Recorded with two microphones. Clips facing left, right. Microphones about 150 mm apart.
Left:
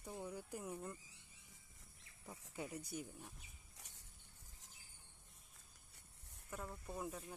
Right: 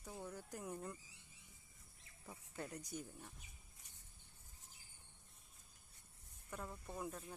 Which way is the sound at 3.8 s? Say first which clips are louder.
Left 5 dB; 75° left (ahead or behind).